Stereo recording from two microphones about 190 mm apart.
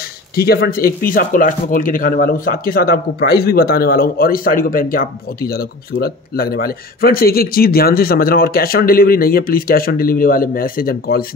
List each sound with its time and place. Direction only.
0.4 s speech: 55° left (ahead or behind)